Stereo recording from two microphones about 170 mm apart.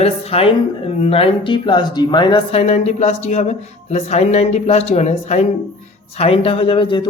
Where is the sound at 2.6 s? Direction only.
40° left (ahead or behind).